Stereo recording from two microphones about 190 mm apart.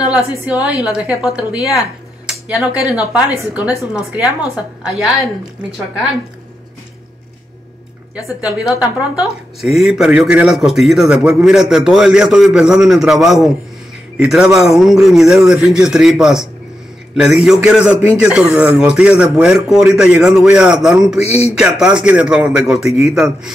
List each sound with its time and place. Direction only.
0.1 s a woman's voice: 5° right (ahead or behind)
2.2 s a sound: 5° right (ahead or behind)
3.1 s speech: 5° right (ahead or behind)
8.4 s speech: 5° right (ahead or behind)
21.2 s speech: 30° left (ahead or behind)
21.5 s speech: 5° right (ahead or behind)